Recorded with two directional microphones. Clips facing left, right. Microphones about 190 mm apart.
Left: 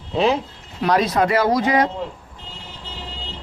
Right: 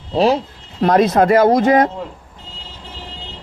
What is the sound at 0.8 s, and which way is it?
Speech, 50° right (ahead or behind).